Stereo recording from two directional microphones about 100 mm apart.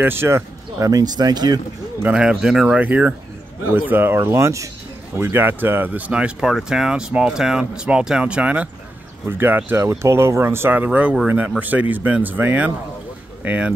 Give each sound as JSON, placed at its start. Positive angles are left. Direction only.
{"t": 0.0, "sound": "speech", "side_deg": -25}
{"t": 2.0, "sound": "speech", "side_deg": -10}